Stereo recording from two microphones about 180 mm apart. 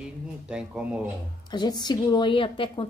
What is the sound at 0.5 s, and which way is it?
Speech, 5° right (ahead or behind).